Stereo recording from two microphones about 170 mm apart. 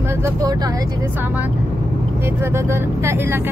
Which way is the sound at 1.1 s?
10° right (ahead or behind).